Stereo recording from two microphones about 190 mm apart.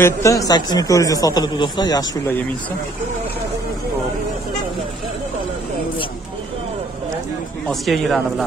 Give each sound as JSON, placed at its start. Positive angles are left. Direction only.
{"t": 0.0, "sound": "speech", "side_deg": 15}
{"t": 7.6, "sound": "speech", "side_deg": 0}